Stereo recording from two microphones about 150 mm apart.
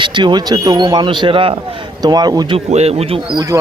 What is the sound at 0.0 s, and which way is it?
Speech, 30° right (ahead or behind).